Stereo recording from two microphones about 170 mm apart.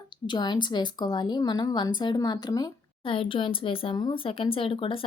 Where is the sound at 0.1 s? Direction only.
25° left (ahead or behind).